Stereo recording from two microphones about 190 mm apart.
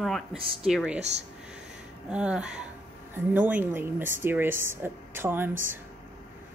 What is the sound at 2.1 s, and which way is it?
A woman's voice, 5° right (ahead or behind).